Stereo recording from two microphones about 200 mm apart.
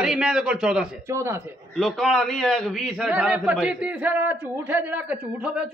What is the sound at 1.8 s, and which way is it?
A man's voice, centre (ahead or behind).